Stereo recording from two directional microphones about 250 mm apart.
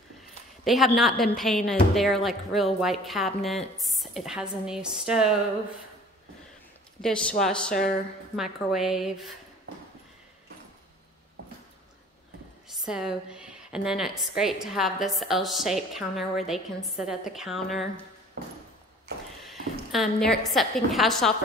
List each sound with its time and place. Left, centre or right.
0.7 s a woman's voice: centre
7.0 s a woman's voice: centre
12.6 s a woman's voice: centre
19.1 s a sound: right
19.4 s a woman's voice: centre